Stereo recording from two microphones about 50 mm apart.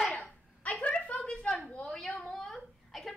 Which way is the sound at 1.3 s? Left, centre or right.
Centre.